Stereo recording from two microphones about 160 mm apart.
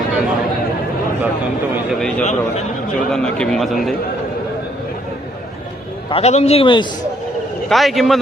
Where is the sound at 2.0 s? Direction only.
5° left (ahead or behind).